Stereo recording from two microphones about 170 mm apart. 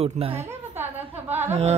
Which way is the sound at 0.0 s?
35° right (ahead or behind).